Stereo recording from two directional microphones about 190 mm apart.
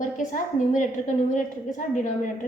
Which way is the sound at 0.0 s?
40° left (ahead or behind).